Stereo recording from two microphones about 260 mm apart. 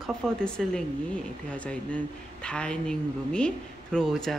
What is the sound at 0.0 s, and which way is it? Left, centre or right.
Speech, centre.